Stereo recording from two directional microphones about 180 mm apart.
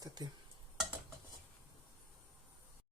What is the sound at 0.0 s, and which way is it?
Stir, 20° right (ahead or behind).